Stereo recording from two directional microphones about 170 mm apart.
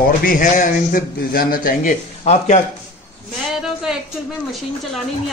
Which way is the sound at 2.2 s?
40° left (ahead or behind).